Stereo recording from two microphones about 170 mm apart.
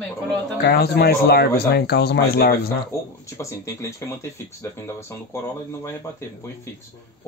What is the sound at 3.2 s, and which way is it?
Speech, 15° left (ahead or behind).